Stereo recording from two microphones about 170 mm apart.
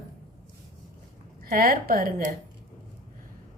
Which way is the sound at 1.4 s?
60° right (ahead or behind).